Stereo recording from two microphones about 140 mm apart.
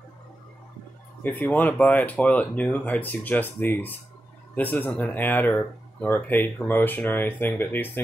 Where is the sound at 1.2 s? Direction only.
10° left (ahead or behind).